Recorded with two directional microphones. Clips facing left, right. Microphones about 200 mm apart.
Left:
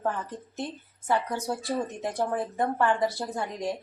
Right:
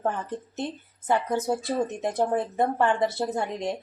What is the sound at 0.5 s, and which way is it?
Speech, 20° right (ahead or behind).